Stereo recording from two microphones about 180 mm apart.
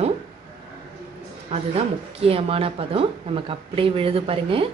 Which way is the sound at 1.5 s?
35° right (ahead or behind).